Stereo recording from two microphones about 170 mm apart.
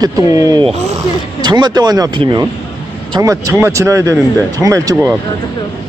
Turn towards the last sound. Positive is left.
turn(degrees=-20)  # may be behind; listen again after turning